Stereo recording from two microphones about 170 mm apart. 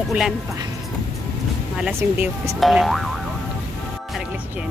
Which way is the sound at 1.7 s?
10° right (ahead or behind).